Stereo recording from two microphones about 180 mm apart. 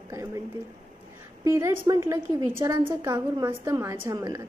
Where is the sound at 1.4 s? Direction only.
15° right (ahead or behind).